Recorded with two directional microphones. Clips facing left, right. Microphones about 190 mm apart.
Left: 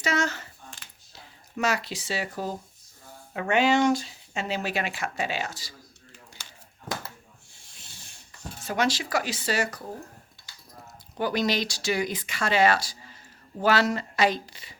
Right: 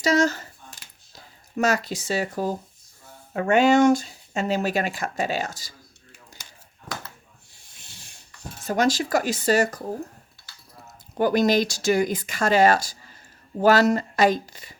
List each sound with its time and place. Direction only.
0.0 s a sound: 40° right (ahead or behind)
3.3 s speech: 45° right (ahead or behind)
8.6 s speech: 45° right (ahead or behind)
11.2 s speech: 45° right (ahead or behind)